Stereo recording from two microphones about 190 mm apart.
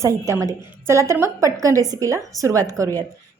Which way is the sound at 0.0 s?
15° right (ahead or behind).